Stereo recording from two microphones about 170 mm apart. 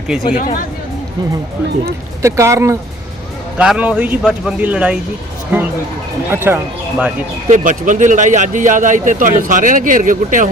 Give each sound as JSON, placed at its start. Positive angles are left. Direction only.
{"t": 0.1, "sound": "speech", "side_deg": 0}
{"t": 2.2, "sound": "speech", "side_deg": -15}
{"t": 6.3, "sound": "speech", "side_deg": -15}
{"t": 7.4, "sound": "speech", "side_deg": -45}